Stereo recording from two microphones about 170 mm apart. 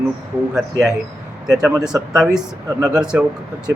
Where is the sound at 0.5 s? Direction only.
Centre (ahead or behind).